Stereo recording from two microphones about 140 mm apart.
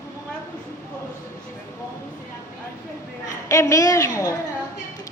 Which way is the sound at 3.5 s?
20° left (ahead or behind).